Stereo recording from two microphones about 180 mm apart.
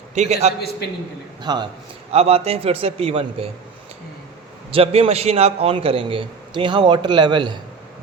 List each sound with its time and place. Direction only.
0.1 s a man's voice: 40° right (ahead or behind)
1.4 s a man's voice: 25° right (ahead or behind)
2.1 s a man's voice: 35° right (ahead or behind)
4.7 s a man's voice: 35° right (ahead or behind)